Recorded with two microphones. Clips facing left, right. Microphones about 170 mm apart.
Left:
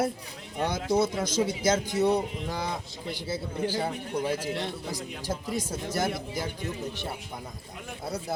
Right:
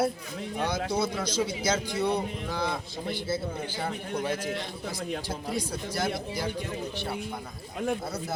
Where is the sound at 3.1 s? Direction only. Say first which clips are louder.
Right 2 dB; 15° left (ahead or behind).